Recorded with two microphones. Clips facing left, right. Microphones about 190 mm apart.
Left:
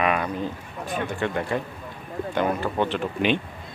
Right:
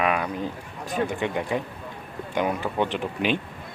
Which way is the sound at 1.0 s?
15° right (ahead or behind).